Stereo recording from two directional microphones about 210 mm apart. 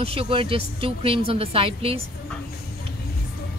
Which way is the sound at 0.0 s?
25° right (ahead or behind).